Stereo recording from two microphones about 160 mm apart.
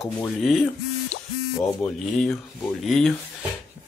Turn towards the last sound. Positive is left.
turn(degrees=5)  # may be behind; listen again after turning